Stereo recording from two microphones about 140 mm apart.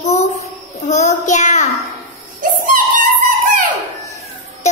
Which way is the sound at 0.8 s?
55° left (ahead or behind).